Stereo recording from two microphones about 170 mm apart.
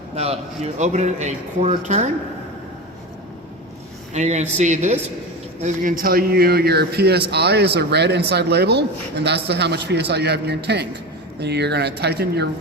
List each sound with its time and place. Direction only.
0.2 s speech: 40° right (ahead or behind)
4.1 s a man's voice: 40° right (ahead or behind); by 12.5 s 75° right (ahead or behind)